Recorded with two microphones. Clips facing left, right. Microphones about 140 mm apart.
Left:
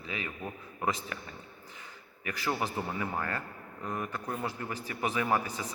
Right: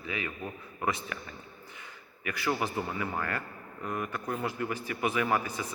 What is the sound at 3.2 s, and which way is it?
A man's voice, 25° left (ahead or behind).